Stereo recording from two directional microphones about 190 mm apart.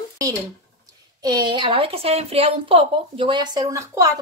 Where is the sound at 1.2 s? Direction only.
20° right (ahead or behind).